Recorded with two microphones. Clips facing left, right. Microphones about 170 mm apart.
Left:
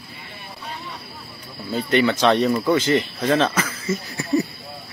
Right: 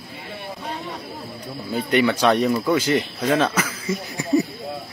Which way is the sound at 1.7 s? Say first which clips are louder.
Even; 10° right (ahead or behind).